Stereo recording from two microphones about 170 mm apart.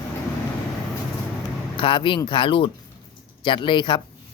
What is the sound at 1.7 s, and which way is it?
Speech, 30° left (ahead or behind).